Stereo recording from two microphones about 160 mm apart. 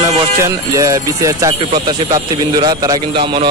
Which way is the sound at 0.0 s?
20° right (ahead or behind).